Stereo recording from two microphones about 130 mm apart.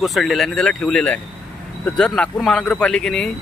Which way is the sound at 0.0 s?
Centre (ahead or behind).